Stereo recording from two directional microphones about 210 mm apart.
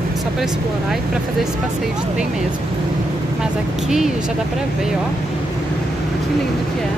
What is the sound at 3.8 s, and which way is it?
Speech, centre (ahead or behind).